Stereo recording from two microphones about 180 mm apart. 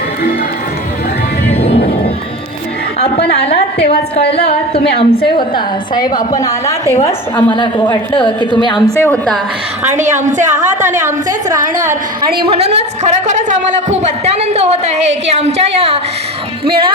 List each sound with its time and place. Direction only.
1.5 s music: 35° left (ahead or behind)
3.3 s a woman's voice: 35° left (ahead or behind); by 7.5 s 10° left (ahead or behind)
7.5 s a woman's voice: 25° left (ahead or behind)
9.0 s a woman's voice: 5° left (ahead or behind)
9.8 s a woman's voice: 40° right (ahead or behind)
10.8 s a woman's voice: 15° right (ahead or behind)
12.7 s a woman's voice: 40° right (ahead or behind)